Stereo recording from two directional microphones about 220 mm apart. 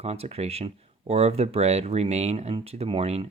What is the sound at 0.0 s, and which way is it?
Speech, 30° right (ahead or behind).